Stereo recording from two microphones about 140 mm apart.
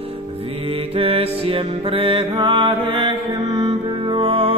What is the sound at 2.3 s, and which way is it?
Music, 35° right (ahead or behind).